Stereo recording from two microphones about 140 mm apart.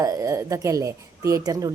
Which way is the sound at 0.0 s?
25° right (ahead or behind).